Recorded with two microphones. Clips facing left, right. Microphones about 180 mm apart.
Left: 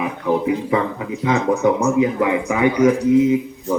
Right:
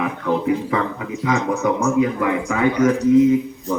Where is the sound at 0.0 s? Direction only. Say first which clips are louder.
Left 1 dB; 15° left (ahead or behind).